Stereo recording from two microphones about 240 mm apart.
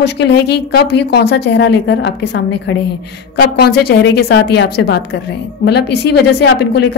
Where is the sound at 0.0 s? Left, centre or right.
Left.